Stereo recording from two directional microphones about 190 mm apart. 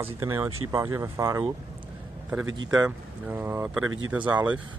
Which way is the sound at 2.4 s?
90° right.